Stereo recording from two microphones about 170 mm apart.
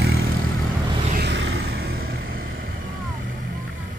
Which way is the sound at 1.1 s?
85° right.